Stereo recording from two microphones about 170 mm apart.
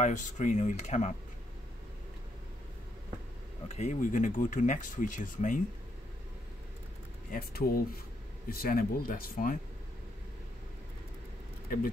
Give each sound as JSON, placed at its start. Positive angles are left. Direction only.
{"t": 0.0, "sound": "speech", "side_deg": 45}
{"t": 3.6, "sound": "speech", "side_deg": 40}
{"t": 7.2, "sound": "speech", "side_deg": 60}